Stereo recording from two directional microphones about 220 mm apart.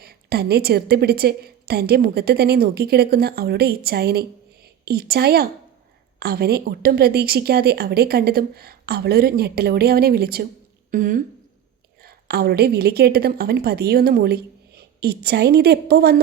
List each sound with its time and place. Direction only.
0.0 s a woman's voice: 45° right (ahead or behind)